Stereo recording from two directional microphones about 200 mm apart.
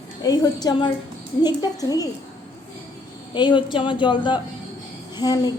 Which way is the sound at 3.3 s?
25° left (ahead or behind).